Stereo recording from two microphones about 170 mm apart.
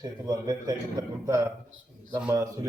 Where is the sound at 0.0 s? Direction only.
25° right (ahead or behind).